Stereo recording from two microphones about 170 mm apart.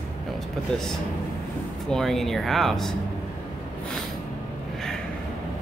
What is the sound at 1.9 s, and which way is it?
Speech, centre (ahead or behind).